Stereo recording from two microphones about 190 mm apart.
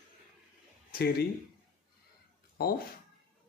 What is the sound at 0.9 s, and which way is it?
Speech, 50° left (ahead or behind).